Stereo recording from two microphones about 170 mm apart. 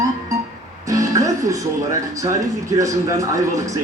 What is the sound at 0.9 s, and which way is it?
Music, 20° right (ahead or behind).